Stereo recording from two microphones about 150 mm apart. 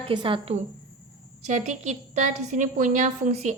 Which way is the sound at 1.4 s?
50° right (ahead or behind).